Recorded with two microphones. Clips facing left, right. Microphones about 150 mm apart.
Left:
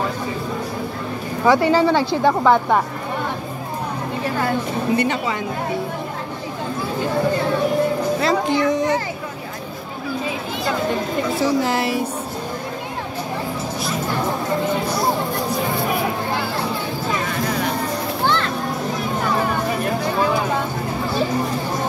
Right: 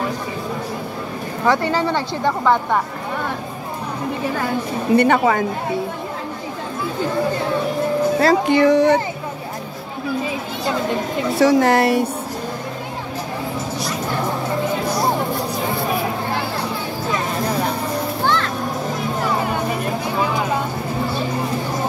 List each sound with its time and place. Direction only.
1.4 s speech: 10° left (ahead or behind)
4.9 s speech: 55° right (ahead or behind)
8.2 s speech: 55° right (ahead or behind)
11.3 s speech: 70° right (ahead or behind)